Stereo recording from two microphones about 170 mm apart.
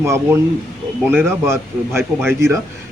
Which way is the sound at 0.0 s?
15° right (ahead or behind).